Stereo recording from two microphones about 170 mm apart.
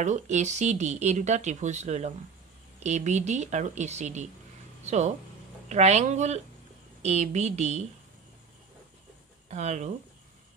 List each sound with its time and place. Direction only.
0.0 s speech: 45° right (ahead or behind)
9.5 s speech: 40° right (ahead or behind)